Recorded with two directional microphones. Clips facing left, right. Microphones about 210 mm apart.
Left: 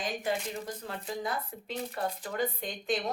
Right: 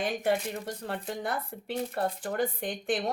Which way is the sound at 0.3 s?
65° right (ahead or behind).